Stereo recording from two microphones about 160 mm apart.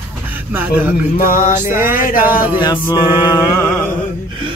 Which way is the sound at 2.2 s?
10° right (ahead or behind).